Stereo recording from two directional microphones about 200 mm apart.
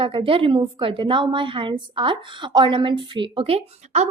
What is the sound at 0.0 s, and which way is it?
A woman's voice, 25° right (ahead or behind).